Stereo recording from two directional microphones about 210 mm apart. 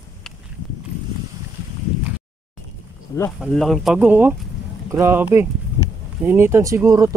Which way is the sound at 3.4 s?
Centre (ahead or behind).